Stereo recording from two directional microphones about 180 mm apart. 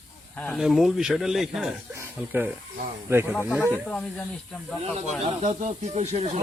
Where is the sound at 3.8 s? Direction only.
5° left (ahead or behind).